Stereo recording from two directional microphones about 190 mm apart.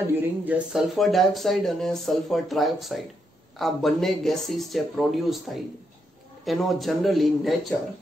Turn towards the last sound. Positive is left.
turn(degrees=0)  # may be behind; listen again after turning